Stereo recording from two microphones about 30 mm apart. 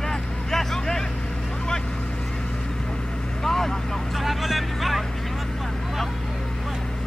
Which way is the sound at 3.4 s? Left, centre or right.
Centre.